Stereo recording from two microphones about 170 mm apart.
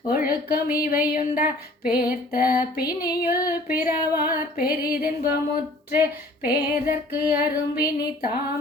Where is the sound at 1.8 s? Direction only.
60° left (ahead or behind).